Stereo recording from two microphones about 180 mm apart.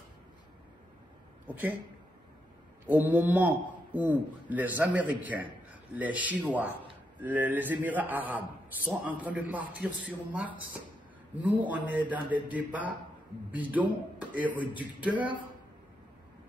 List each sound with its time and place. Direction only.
2.9 s a man's voice: 10° right (ahead or behind)
14.6 s speech: 25° left (ahead or behind)
15.0 s a man's voice: 10° right (ahead or behind)